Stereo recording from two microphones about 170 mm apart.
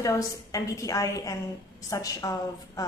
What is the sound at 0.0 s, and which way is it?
A woman's voice, 20° left (ahead or behind).